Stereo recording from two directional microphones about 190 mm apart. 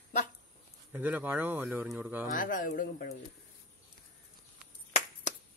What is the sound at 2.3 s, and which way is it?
Speech, 45° left (ahead or behind).